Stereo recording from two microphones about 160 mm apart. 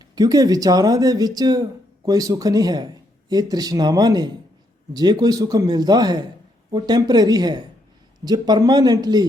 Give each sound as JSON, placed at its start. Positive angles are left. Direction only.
{"t": 0.0, "sound": "speech", "side_deg": -25}